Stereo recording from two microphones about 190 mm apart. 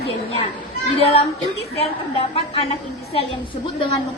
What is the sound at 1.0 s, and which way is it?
A woman's voice, 30° left (ahead or behind).